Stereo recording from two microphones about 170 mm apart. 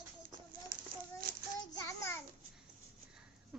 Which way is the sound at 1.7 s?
20° left (ahead or behind).